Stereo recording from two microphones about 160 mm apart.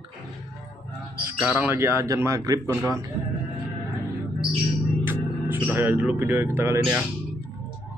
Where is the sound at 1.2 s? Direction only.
15° right (ahead or behind).